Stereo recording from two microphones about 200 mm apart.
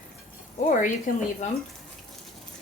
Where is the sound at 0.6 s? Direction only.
40° left (ahead or behind).